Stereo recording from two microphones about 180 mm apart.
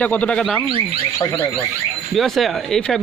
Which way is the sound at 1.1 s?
15° left (ahead or behind).